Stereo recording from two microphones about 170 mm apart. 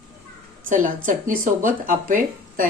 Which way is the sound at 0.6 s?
50° right (ahead or behind).